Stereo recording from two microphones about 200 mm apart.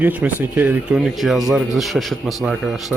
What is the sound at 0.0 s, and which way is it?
Speech, 10° right (ahead or behind).